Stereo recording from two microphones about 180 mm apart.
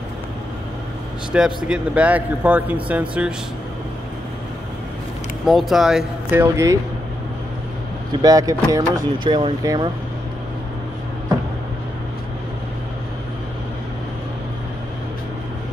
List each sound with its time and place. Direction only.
1.3 s speech: 5° right (ahead or behind)
5.5 s speech: centre (ahead or behind)
6.4 s speech: 15° right (ahead or behind)
8.2 s speech: 20° right (ahead or behind)